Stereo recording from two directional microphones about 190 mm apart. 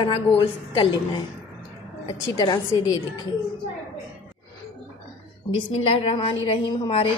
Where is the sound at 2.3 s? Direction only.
20° left (ahead or behind).